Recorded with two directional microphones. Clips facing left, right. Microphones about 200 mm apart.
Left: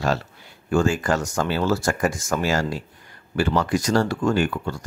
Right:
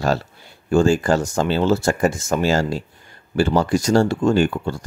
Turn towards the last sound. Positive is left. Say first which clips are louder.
# right 4 dB
turn(degrees=-30)  # may be behind; listen again after turning